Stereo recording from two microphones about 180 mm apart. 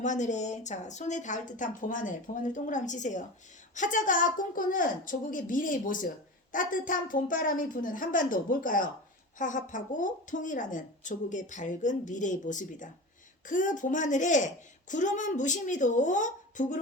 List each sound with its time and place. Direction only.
0.0 s a woman's voice: 40° left (ahead or behind)